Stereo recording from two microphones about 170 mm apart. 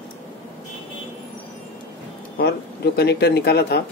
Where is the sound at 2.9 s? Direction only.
75° left (ahead or behind).